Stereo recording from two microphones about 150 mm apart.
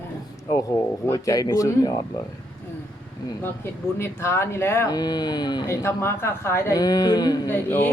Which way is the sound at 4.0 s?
15° left (ahead or behind).